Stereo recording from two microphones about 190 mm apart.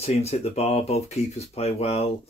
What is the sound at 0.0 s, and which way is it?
Speech, 35° left (ahead or behind).